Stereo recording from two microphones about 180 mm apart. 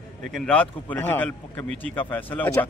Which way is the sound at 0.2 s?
5° left (ahead or behind).